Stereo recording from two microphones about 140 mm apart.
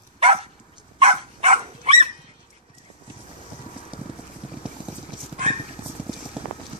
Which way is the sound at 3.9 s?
40° right (ahead or behind).